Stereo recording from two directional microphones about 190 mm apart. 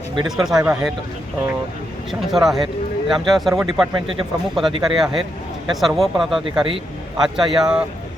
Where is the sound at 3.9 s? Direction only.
30° right (ahead or behind).